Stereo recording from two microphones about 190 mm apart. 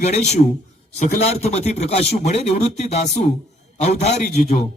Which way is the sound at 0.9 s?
35° left (ahead or behind).